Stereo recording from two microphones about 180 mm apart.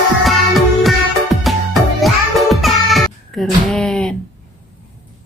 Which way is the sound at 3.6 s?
5° left (ahead or behind).